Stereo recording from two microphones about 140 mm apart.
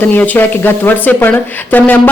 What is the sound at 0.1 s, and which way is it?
Speech, 15° left (ahead or behind).